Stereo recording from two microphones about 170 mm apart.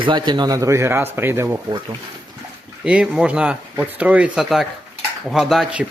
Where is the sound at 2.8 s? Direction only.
5° right (ahead or behind).